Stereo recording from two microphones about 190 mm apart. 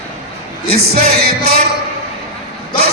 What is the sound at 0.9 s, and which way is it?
Music, 55° right (ahead or behind).